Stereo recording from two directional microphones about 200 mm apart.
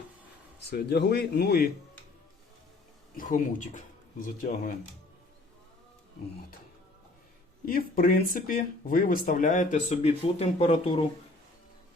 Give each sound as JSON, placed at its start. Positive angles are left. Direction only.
{"t": 0.7, "sound": "speech", "side_deg": 55}
{"t": 3.2, "sound": "speech", "side_deg": 40}
{"t": 7.6, "sound": "speech", "side_deg": 45}